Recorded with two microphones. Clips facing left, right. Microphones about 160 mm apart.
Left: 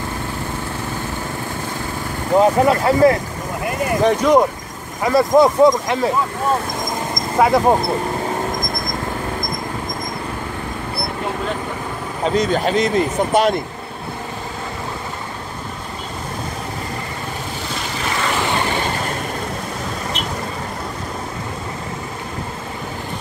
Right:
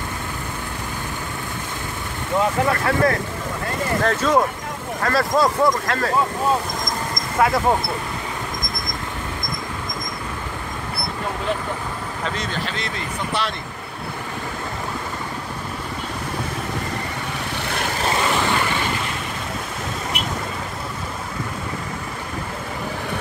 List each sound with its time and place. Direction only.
2.3 s speech: 30° left (ahead or behind)
7.3 s speech: 20° left (ahead or behind)
12.4 s speech: 45° left (ahead or behind)
17.6 s vehicle: 60° right (ahead or behind)